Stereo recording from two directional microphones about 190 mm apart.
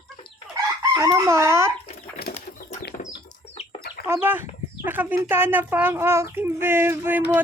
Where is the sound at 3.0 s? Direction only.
35° left (ahead or behind).